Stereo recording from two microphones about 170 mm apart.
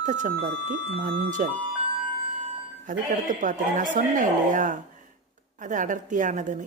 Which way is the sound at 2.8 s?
50° right (ahead or behind).